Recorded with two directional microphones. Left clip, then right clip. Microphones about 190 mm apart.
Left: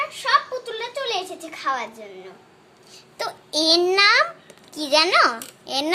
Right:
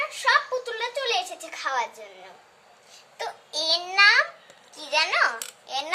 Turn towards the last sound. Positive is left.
turn(degrees=50)  # may be behind; listen again after turning